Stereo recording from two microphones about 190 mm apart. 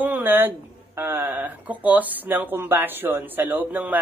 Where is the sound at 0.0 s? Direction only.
10° right (ahead or behind).